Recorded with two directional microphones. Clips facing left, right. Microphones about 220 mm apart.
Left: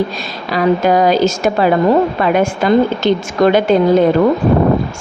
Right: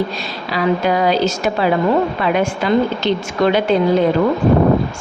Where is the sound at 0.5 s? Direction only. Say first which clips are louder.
Left 4 dB; 45° left (ahead or behind).